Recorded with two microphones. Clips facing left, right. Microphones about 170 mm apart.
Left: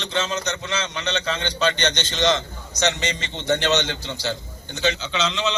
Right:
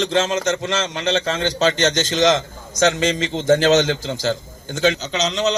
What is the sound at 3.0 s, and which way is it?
Speech, 90° right.